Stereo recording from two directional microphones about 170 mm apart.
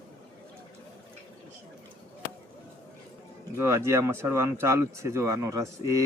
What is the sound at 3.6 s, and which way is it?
Speech, 15° right (ahead or behind).